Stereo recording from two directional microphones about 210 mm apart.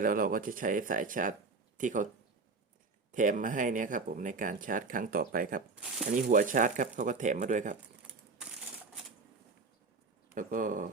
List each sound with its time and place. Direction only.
0.0 s speech: 40° right (ahead or behind)
3.1 s speech: 40° right (ahead or behind)
10.3 s speech: 40° right (ahead or behind)